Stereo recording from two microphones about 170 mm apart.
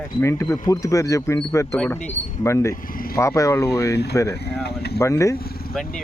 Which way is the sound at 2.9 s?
60° left (ahead or behind).